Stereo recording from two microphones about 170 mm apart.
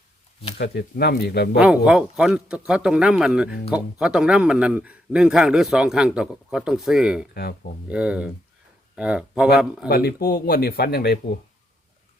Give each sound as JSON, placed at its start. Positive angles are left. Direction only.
{"t": 0.6, "sound": "speech", "side_deg": 75}
{"t": 1.5, "sound": "a man's voice", "side_deg": -5}
{"t": 7.3, "sound": "speech", "side_deg": 65}
{"t": 7.9, "sound": "a man's voice", "side_deg": -5}
{"t": 9.9, "sound": "speech", "side_deg": 65}